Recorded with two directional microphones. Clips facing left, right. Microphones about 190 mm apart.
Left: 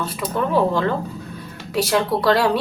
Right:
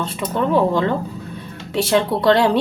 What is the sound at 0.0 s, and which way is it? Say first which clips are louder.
Speech: right 2 dB; 25° right (ahead or behind).